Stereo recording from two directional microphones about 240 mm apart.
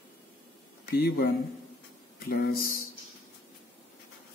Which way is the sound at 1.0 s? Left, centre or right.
Left.